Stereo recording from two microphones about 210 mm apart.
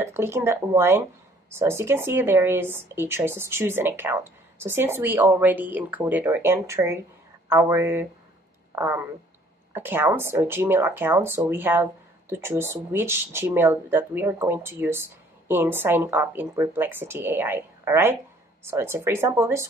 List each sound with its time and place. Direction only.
0.0 s speech: 10° right (ahead or behind)